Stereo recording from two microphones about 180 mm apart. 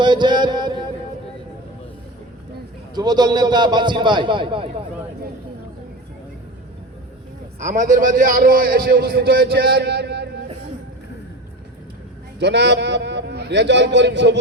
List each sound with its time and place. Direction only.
0.0 s mantra: 25° right (ahead or behind)
2.9 s a man's voice: 25° right (ahead or behind)
7.6 s a man's voice: 45° right (ahead or behind); by 10.4 s 70° right (ahead or behind)
12.4 s a man's voice: 70° right (ahead or behind)